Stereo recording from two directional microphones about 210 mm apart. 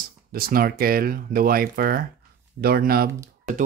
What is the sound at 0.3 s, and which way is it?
Speech, 45° right (ahead or behind).